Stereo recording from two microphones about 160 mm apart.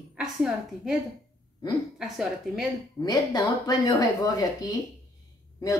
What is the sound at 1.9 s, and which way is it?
Speech, centre (ahead or behind).